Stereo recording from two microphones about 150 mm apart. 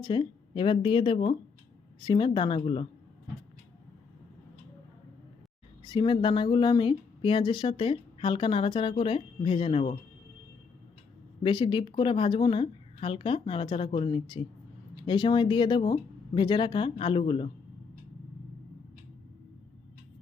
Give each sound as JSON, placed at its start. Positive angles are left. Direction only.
{"t": 0.0, "sound": "a woman's voice", "side_deg": 30}
{"t": 5.8, "sound": "speech", "side_deg": 30}
{"t": 11.4, "sound": "speech", "side_deg": 30}